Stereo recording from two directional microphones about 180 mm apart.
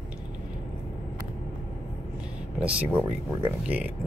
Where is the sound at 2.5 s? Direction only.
5° right (ahead or behind).